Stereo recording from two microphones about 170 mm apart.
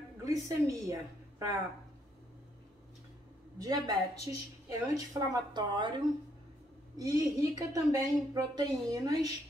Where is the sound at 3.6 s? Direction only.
20° right (ahead or behind).